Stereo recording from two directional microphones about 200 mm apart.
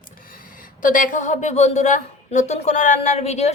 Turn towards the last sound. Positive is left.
turn(degrees=35)  # may be behind; listen again after turning